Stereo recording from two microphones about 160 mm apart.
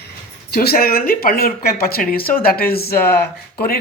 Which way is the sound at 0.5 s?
75° left (ahead or behind).